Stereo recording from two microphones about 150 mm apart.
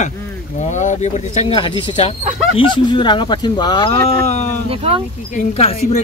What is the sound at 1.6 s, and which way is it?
Speech, 35° left (ahead or behind).